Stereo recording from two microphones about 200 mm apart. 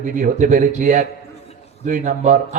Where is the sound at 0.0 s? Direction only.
40° right (ahead or behind).